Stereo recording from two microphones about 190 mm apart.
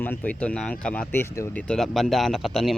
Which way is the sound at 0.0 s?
10° left (ahead or behind).